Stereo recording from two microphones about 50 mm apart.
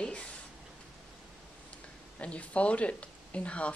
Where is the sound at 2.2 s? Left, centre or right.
Left.